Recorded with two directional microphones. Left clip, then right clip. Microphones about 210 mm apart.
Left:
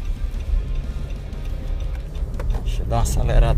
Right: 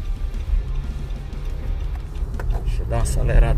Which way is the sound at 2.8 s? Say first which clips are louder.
Left 2 dB; 15° left (ahead or behind).